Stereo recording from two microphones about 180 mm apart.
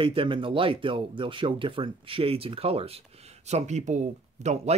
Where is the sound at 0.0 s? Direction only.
30° right (ahead or behind).